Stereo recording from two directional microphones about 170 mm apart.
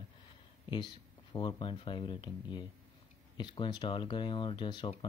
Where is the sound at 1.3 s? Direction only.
30° left (ahead or behind).